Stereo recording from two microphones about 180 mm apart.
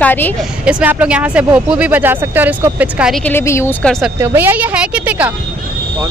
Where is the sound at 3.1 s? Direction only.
10° left (ahead or behind).